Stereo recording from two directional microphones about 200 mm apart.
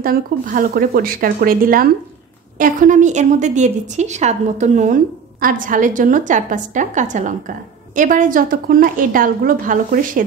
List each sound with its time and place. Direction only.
0.0 s a woman's voice: 45° right (ahead or behind)